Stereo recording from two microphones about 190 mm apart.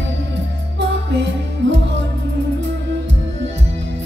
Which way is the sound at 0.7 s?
70° right (ahead or behind).